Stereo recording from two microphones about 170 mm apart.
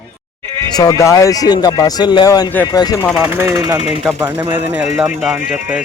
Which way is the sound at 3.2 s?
15° right (ahead or behind).